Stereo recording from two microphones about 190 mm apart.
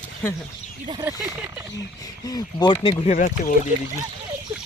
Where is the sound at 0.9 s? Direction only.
20° right (ahead or behind).